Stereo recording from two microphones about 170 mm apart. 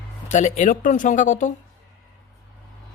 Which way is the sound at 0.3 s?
45° left (ahead or behind).